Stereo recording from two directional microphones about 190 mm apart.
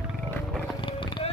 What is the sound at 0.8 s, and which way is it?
Vehicle, 25° left (ahead or behind).